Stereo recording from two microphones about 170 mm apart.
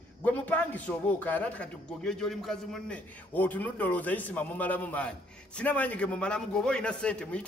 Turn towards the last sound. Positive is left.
turn(degrees=5)  # may be behind; listen again after turning